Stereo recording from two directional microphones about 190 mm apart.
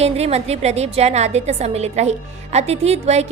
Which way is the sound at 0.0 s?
35° right (ahead or behind).